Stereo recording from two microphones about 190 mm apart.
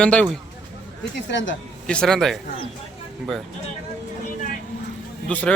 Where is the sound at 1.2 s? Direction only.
75° left (ahead or behind).